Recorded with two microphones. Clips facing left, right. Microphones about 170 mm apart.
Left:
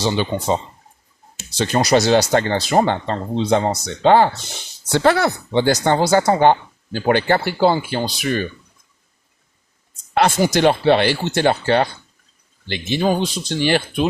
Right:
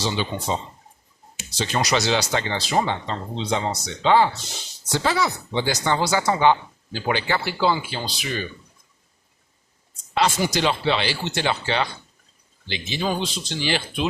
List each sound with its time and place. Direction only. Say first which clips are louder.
0.0 s speech: left 6 dB; 55° left (ahead or behind)
10.2 s speech: left 5 dB; 55° left (ahead or behind)